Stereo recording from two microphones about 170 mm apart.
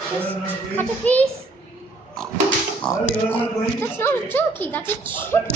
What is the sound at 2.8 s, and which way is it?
Speech, 10° left (ahead or behind).